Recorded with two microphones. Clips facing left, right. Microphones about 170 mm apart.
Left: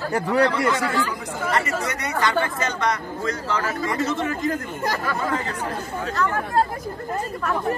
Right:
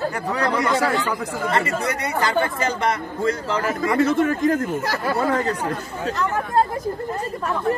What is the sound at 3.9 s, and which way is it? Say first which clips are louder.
Speech: right 8 dB; 55° right (ahead or behind).